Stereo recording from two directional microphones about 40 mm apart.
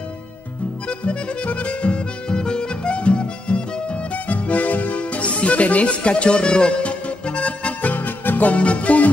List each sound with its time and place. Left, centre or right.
0.8 s music: left
4.1 s music: left
7.9 s music: left